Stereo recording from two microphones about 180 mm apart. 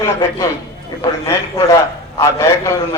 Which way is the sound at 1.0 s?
15° left (ahead or behind).